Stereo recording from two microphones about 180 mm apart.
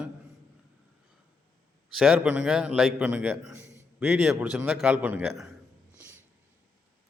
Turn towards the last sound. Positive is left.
turn(degrees=-10)  # may be behind; listen again after turning